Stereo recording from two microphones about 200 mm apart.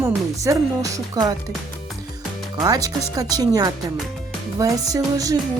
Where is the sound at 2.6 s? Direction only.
20° right (ahead or behind).